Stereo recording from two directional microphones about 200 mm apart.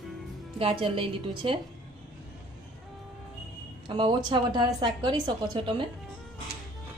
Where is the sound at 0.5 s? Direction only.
25° right (ahead or behind).